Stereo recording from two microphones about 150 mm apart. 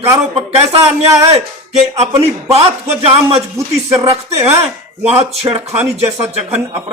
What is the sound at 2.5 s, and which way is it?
Speech, 40° right (ahead or behind).